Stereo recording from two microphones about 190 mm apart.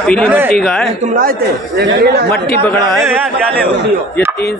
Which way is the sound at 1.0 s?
45° right (ahead or behind).